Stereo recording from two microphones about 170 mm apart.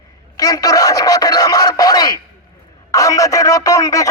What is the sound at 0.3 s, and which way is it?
Speech, 20° left (ahead or behind).